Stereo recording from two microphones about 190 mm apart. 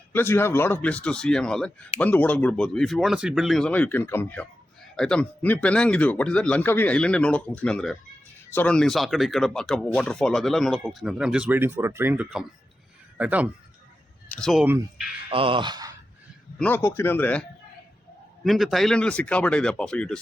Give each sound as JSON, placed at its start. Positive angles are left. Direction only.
{"t": 0.1, "sound": "speech", "side_deg": 10}
{"t": 14.3, "sound": "speech", "side_deg": 5}
{"t": 14.6, "sound": "speech", "side_deg": -10}
{"t": 15.3, "sound": "speech", "side_deg": -30}
{"t": 16.6, "sound": "speech", "side_deg": 10}
{"t": 18.4, "sound": "speech", "side_deg": 0}